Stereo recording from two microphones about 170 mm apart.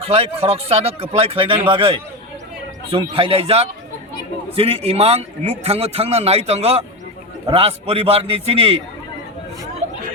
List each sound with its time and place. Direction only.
0.0 s a man's voice: 35° right (ahead or behind)